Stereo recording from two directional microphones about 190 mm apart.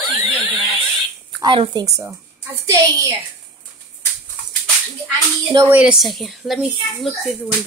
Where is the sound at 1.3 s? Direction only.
25° right (ahead or behind).